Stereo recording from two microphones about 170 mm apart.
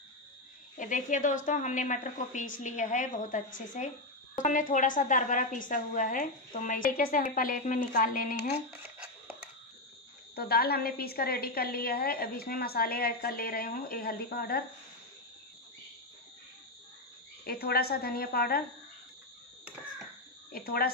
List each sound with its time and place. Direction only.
0.7 s a woman's voice: 50° left (ahead or behind)
8.9 s a sound: 5° right (ahead or behind)
10.3 s a woman's voice: 65° left (ahead or behind)
17.5 s a woman's voice: 65° left (ahead or behind)
20.5 s a woman's voice: 60° left (ahead or behind)